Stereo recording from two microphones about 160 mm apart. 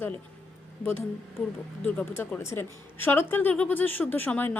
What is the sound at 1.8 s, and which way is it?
A woman's voice, 15° left (ahead or behind).